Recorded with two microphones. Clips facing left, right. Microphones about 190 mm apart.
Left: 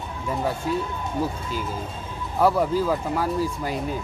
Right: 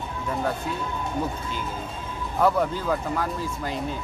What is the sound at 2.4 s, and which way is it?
Speech, 5° left (ahead or behind).